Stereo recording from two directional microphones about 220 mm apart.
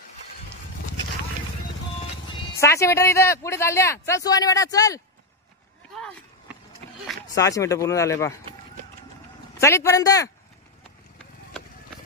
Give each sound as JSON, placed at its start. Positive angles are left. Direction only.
{"t": 2.2, "sound": "speech", "side_deg": 15}
{"t": 7.3, "sound": "speech", "side_deg": 15}
{"t": 9.6, "sound": "speech", "side_deg": 15}